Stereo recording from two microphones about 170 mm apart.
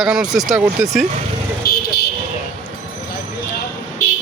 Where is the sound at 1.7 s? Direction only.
65° left (ahead or behind).